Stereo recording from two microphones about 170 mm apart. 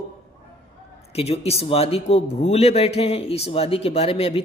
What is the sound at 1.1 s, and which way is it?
Speech, 35° left (ahead or behind).